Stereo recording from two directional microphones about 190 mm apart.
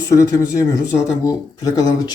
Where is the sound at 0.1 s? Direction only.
15° left (ahead or behind).